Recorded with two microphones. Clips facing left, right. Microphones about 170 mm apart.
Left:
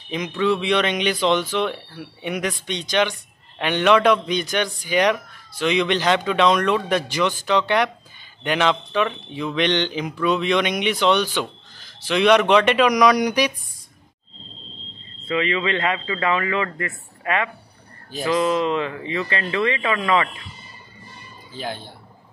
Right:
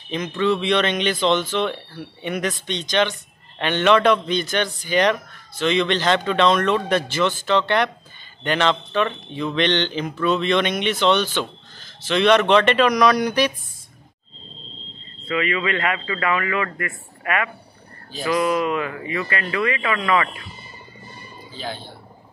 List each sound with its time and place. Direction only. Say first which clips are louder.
0.1 s speech: even; 10° left (ahead or behind)
15.2 s a man's voice: left 1 dB; 25° left (ahead or behind)
21.5 s speech: left 1 dB; 50° left (ahead or behind)